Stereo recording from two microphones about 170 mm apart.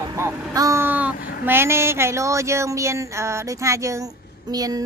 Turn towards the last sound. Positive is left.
turn(degrees=-20)  # may be behind; listen again after turning